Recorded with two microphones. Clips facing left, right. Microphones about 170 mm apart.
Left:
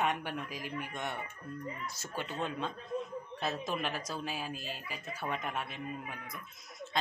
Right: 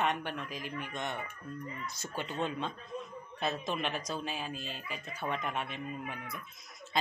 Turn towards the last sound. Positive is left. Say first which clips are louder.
# right 1 dB
turn(degrees=-5)  # may be behind; listen again after turning